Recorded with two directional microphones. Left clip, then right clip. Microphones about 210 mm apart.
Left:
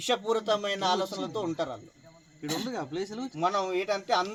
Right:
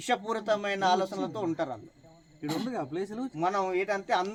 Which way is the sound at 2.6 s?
15° right (ahead or behind).